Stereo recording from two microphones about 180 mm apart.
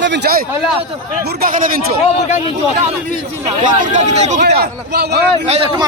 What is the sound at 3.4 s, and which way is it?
Speech, 40° right (ahead or behind).